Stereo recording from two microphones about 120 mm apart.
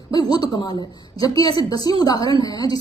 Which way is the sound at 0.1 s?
35° left (ahead or behind).